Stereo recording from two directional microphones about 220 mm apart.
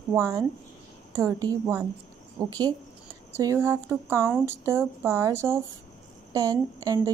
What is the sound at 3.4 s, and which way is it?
Speech, 15° right (ahead or behind).